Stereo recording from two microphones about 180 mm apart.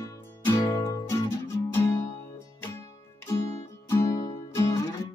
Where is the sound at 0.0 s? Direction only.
15° left (ahead or behind).